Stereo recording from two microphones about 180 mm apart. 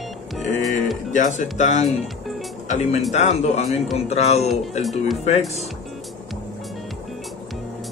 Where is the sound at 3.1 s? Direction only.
40° left (ahead or behind).